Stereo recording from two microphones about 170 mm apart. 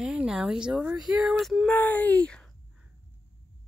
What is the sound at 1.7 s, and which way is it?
Speech, 10° left (ahead or behind).